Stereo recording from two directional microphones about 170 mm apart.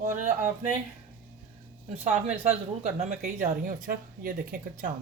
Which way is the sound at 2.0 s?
40° right (ahead or behind).